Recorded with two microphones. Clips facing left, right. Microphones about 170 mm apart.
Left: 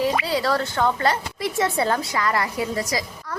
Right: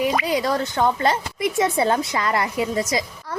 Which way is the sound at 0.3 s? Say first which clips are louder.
Right 1 dB; 20° right (ahead or behind).